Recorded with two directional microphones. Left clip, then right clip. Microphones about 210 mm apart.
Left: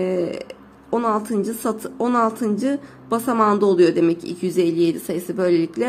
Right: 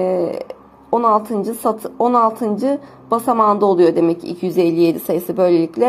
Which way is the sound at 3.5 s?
10° left (ahead or behind).